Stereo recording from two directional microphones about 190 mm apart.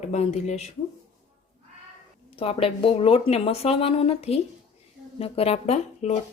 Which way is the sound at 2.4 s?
30° left (ahead or behind).